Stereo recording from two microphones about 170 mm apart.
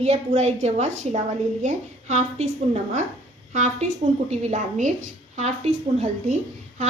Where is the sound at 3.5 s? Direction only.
45° right (ahead or behind).